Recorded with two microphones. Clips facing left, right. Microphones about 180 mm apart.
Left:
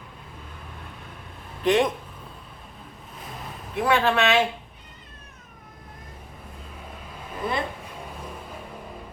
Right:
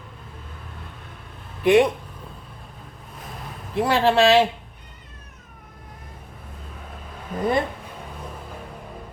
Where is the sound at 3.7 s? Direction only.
30° right (ahead or behind).